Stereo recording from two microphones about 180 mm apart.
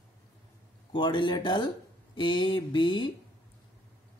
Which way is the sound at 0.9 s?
25° left (ahead or behind).